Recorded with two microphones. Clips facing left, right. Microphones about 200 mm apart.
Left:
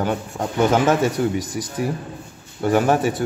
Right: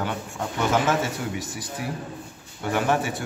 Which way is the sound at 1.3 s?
45° left (ahead or behind).